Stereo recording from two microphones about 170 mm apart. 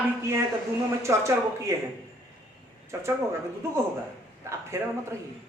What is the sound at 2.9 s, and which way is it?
Speech, 15° right (ahead or behind).